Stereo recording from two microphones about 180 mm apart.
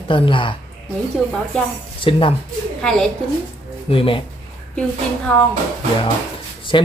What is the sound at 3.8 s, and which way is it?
Speech, 30° left (ahead or behind).